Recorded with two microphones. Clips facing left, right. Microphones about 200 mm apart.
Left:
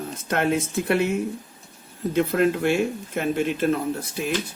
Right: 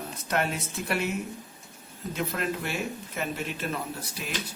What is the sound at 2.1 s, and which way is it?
Speech, 55° left (ahead or behind).